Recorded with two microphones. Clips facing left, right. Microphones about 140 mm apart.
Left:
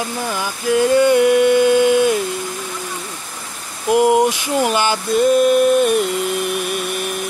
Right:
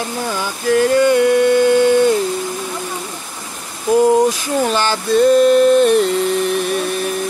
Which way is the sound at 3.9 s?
15° left (ahead or behind).